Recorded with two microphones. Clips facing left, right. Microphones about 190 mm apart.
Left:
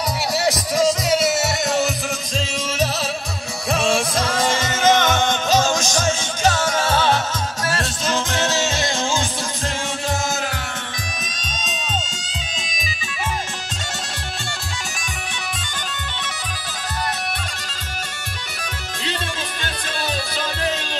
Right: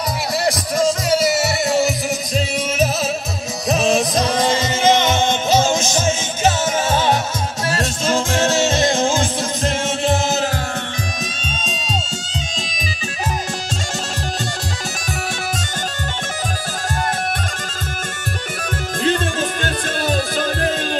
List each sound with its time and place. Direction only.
3.6 s music: 20° right (ahead or behind)
8.7 s music: 20° right (ahead or behind)
19.6 s music: 50° right (ahead or behind)